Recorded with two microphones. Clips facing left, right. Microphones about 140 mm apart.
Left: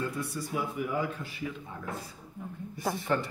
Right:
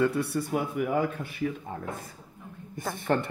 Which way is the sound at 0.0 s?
65° right (ahead or behind).